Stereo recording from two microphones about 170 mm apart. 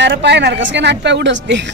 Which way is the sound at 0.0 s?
90° right.